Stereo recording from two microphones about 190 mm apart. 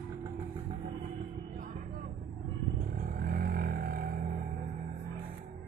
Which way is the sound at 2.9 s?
50° right (ahead or behind).